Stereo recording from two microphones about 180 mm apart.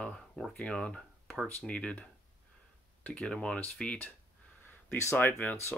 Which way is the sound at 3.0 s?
5° left (ahead or behind).